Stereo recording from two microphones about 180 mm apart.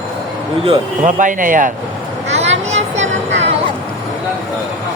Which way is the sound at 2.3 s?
40° right (ahead or behind).